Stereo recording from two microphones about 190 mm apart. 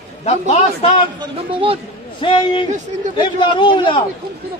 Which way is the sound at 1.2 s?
30° right (ahead or behind).